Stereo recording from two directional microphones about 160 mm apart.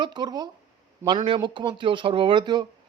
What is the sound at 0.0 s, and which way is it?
Speech, 30° right (ahead or behind).